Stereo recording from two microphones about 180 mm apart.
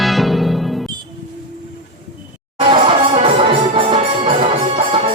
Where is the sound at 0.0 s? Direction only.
Centre (ahead or behind).